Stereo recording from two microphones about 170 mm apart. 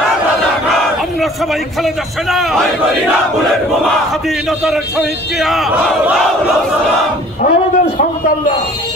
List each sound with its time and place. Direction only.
1.8 s speech: centre (ahead or behind)
4.5 s speech: centre (ahead or behind)
7.4 s a man's voice: 45° left (ahead or behind)